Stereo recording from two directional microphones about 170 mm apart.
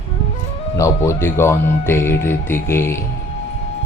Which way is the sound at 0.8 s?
15° left (ahead or behind).